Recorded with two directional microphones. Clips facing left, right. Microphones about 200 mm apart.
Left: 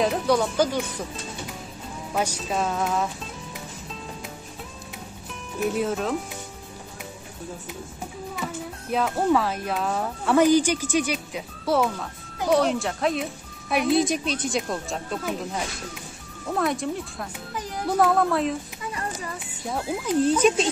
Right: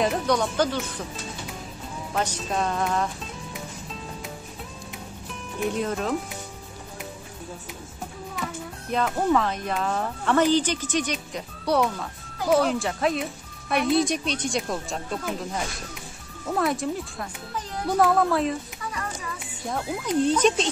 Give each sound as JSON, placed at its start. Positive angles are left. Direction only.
{"t": 0.0, "sound": "speech", "side_deg": 0}
{"t": 2.1, "sound": "speech", "side_deg": 10}
{"t": 5.7, "sound": "speech", "side_deg": 5}
{"t": 8.4, "sound": "music", "side_deg": 5}
{"t": 8.9, "sound": "speech", "side_deg": 5}